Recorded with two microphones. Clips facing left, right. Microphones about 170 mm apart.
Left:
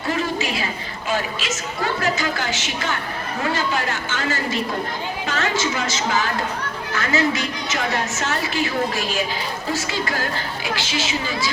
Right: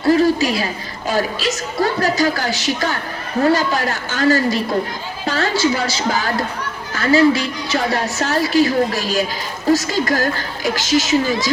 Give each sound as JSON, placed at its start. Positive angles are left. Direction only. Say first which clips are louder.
{"t": 0.0, "sound": "a woman's voice", "louder": "right 9 dB", "side_deg": -35}